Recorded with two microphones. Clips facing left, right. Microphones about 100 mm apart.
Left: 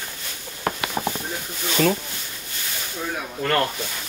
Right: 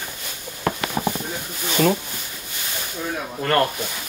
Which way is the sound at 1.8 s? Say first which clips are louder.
Right 1 dB; 20° right (ahead or behind).